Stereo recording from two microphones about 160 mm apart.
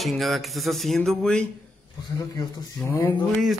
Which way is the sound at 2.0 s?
20° left (ahead or behind).